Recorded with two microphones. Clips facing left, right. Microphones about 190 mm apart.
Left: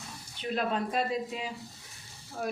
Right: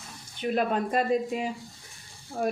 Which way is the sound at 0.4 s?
50° right (ahead or behind).